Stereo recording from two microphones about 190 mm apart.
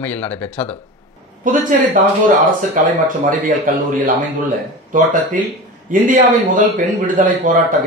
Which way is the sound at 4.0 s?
45° right (ahead or behind).